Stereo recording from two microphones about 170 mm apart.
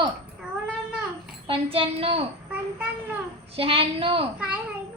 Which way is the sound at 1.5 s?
35° right (ahead or behind).